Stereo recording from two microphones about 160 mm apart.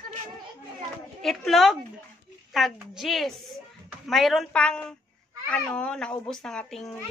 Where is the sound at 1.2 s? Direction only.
Centre (ahead or behind).